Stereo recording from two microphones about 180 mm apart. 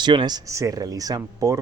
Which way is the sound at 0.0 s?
25° right (ahead or behind).